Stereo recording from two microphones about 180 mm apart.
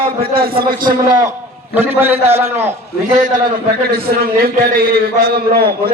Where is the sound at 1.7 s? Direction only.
10° right (ahead or behind).